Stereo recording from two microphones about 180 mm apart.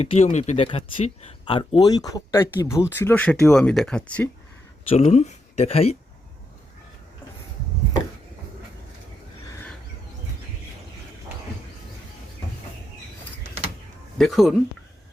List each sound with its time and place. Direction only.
0.0 s speech: 35° left (ahead or behind); by 4.3 s 5° left (ahead or behind)
4.9 s speech: 35° left (ahead or behind)
14.2 s speech: centre (ahead or behind)